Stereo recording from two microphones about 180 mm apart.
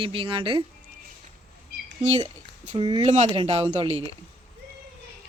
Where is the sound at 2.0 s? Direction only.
35° right (ahead or behind).